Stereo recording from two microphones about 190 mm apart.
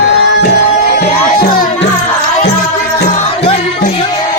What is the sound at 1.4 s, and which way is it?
Music, 55° left (ahead or behind).